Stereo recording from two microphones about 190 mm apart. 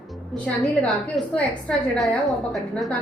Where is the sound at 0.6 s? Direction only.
Centre (ahead or behind).